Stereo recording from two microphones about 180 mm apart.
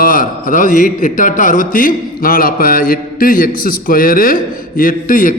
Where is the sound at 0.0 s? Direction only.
50° left (ahead or behind).